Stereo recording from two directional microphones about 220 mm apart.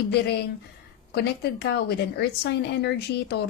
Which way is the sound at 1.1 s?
50° left (ahead or behind).